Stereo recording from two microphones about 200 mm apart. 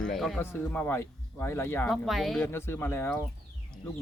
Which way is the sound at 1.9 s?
Centre (ahead or behind).